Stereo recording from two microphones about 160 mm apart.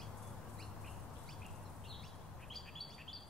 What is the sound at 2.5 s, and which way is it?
Bird, centre (ahead or behind).